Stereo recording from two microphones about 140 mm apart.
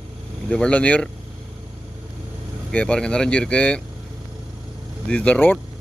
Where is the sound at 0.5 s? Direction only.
10° left (ahead or behind).